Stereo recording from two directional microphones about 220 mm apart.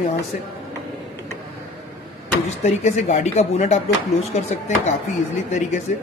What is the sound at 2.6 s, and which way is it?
Speech, 30° left (ahead or behind).